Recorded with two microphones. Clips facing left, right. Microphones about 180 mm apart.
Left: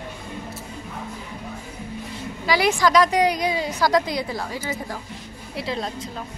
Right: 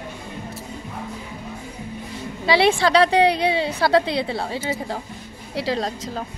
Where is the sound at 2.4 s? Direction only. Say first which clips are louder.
Right 2 dB; 30° right (ahead or behind).